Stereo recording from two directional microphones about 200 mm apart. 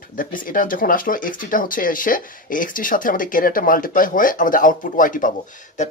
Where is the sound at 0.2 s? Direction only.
45° left (ahead or behind).